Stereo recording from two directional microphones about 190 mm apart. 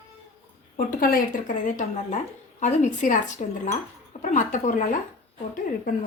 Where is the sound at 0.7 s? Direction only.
50° left (ahead or behind).